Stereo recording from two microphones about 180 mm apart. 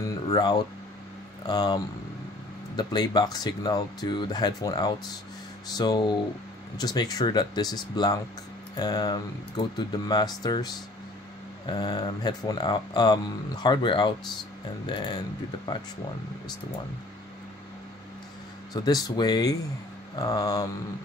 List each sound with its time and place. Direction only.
0.3 s speech: 25° left (ahead or behind)
18.7 s speech: 20° left (ahead or behind)